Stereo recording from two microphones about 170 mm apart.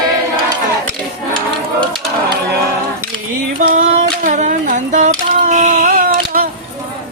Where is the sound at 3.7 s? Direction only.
50° right (ahead or behind).